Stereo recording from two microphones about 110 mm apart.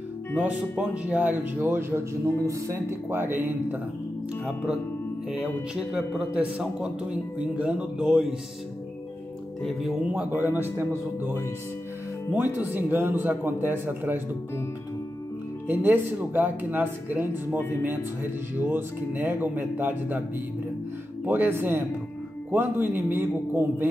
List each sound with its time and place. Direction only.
0.4 s speech: 10° right (ahead or behind)
5.4 s a man's voice: 5° right (ahead or behind)
9.6 s speech: centre (ahead or behind)
10.0 s a man's voice: 15° right (ahead or behind)
12.3 s speech: 20° right (ahead or behind)
15.6 s a man's voice: 20° right (ahead or behind)
21.3 s a man's voice: 20° right (ahead or behind)